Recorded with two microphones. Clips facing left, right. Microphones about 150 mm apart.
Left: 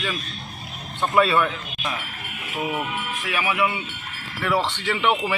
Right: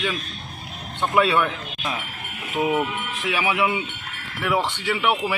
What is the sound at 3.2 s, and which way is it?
A man's voice, 20° right (ahead or behind).